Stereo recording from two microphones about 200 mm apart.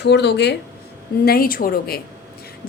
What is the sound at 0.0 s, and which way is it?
A woman's voice, 55° left (ahead or behind).